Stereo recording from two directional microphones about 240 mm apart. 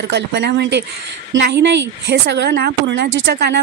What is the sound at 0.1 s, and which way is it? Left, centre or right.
Speech, right.